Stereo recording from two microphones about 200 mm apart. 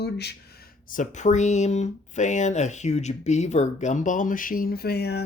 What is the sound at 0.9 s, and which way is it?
Speech, 35° left (ahead or behind).